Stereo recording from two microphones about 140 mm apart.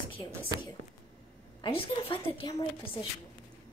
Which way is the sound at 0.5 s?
25° right (ahead or behind).